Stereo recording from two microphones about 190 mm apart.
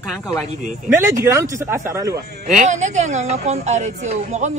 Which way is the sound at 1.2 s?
15° right (ahead or behind).